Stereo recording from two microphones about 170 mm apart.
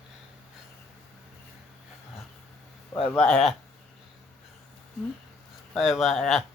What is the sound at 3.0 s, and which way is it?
Speech, 5° left (ahead or behind).